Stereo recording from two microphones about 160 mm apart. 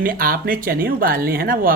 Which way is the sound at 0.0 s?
65° right (ahead or behind).